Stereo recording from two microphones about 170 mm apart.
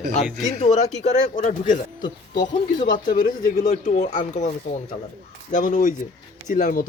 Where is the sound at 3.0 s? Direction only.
55° left (ahead or behind).